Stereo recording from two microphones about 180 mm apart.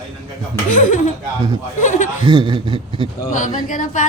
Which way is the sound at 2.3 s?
25° right (ahead or behind).